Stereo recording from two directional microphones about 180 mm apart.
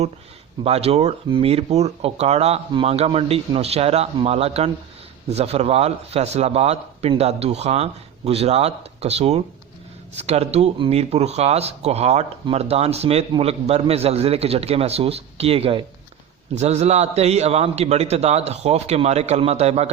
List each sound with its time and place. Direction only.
0.6 s speech: 35° right (ahead or behind)